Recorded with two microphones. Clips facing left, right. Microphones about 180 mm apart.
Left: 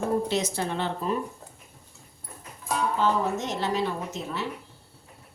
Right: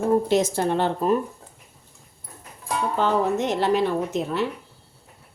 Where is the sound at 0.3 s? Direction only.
50° right (ahead or behind).